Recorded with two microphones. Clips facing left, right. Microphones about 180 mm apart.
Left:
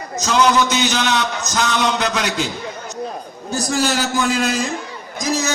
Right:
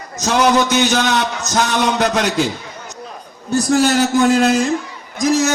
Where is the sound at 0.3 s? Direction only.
55° right (ahead or behind).